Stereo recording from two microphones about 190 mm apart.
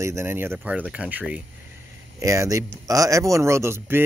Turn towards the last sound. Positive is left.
turn(degrees=-10)  # may be behind; listen again after turning